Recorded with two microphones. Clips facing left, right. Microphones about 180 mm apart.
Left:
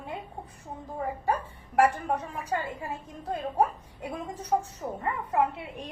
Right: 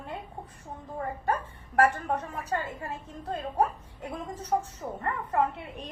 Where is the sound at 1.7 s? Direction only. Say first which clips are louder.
Left 1 dB; 10° left (ahead or behind).